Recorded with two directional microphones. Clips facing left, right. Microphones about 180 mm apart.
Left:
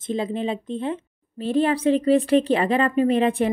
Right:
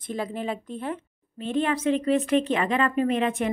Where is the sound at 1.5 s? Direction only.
35° left (ahead or behind).